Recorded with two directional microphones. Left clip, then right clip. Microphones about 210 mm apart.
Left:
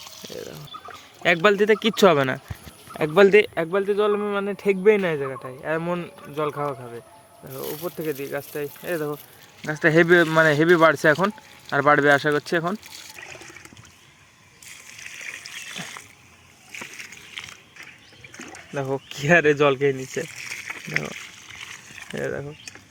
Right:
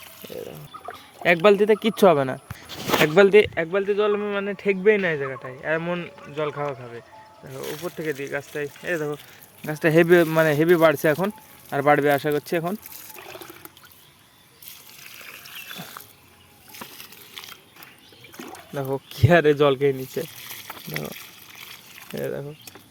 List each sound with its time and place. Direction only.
0.2 s pour: centre (ahead or behind)
1.2 s speech: centre (ahead or behind)
3.4 s speech: 15° left (ahead or behind)
13.1 s water: 55° right (ahead or behind)
18.3 s water: 60° right (ahead or behind)
18.7 s speech: 5° right (ahead or behind)
20.3 s a sound: 20° right (ahead or behind)
22.0 s speech: centre (ahead or behind)